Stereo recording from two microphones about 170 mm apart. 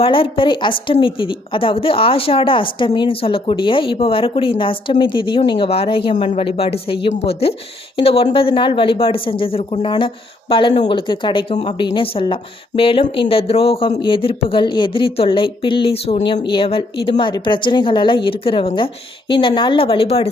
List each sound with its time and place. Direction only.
0.0 s a woman's voice: 30° left (ahead or behind)